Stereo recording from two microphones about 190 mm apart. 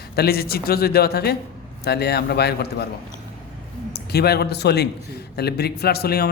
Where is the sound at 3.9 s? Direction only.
55° left (ahead or behind).